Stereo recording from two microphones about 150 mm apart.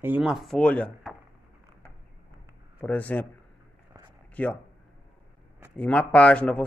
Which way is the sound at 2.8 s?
10° left (ahead or behind).